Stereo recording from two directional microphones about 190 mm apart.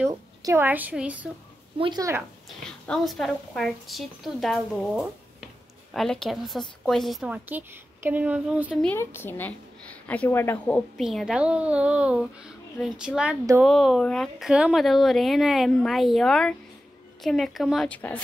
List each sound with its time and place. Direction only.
0.1 s a woman's voice: 20° right (ahead or behind)
1.8 s a woman's voice: 20° right (ahead or behind)
2.9 s a woman's voice: centre (ahead or behind)
8.8 s a woman's voice: 15° left (ahead or behind)